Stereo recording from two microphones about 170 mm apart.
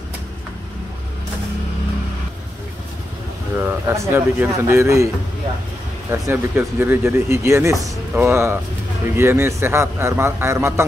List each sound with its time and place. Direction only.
3.5 s a man's voice: 15° right (ahead or behind)
6.2 s a man's voice: 10° right (ahead or behind)